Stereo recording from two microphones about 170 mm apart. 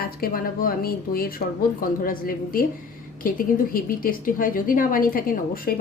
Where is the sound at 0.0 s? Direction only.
60° left (ahead or behind).